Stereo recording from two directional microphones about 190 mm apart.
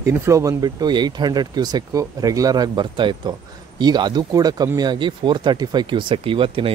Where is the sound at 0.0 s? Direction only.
15° right (ahead or behind).